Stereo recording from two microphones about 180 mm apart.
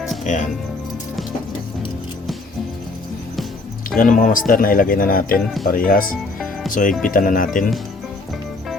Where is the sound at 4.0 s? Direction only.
45° left (ahead or behind).